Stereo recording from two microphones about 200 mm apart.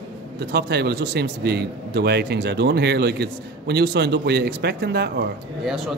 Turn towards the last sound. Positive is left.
turn(degrees=0)  # may be behind; listen again after turning